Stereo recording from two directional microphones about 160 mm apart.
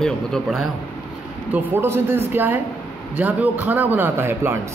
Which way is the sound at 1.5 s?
15° right (ahead or behind).